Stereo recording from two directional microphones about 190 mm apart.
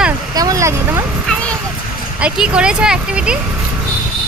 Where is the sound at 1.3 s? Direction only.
5° left (ahead or behind).